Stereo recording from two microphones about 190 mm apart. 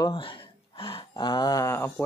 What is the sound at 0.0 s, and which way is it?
Speech, 25° left (ahead or behind).